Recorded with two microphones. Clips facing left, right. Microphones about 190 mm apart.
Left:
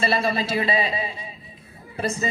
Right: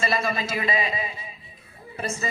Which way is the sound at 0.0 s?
30° left (ahead or behind).